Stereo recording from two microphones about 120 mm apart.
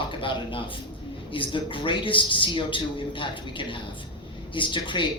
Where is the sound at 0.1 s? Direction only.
45° left (ahead or behind).